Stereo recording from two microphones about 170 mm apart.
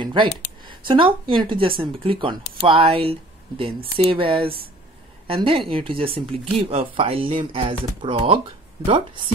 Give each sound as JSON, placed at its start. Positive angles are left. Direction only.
{"t": 0.0, "sound": "a woman's voice", "side_deg": -30}